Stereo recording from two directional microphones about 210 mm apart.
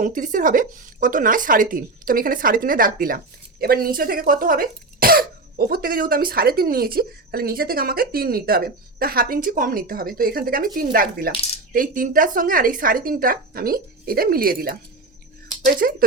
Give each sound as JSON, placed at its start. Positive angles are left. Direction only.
{"t": 0.0, "sound": "speech", "side_deg": -40}